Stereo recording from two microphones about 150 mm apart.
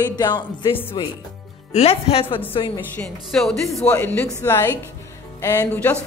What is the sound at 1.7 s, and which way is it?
Speech, 45° left (ahead or behind).